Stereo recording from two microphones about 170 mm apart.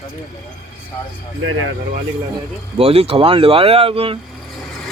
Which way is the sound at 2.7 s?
35° right (ahead or behind).